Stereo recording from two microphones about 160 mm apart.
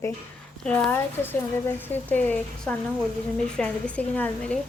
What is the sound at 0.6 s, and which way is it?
Speech, 10° left (ahead or behind).